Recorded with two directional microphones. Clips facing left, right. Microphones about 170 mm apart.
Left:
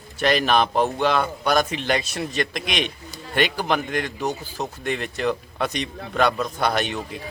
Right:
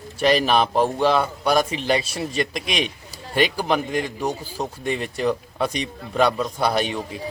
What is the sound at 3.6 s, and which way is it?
A man's voice, 5° right (ahead or behind).